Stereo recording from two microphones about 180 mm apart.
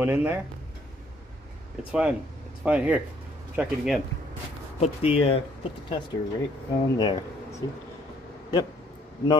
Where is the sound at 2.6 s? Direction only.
5° right (ahead or behind).